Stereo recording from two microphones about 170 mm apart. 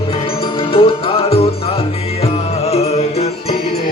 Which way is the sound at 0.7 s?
30° left (ahead or behind).